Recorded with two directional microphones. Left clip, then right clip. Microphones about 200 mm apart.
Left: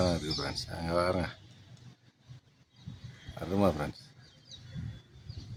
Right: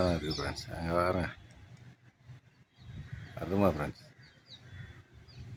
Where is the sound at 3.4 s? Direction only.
Centre (ahead or behind).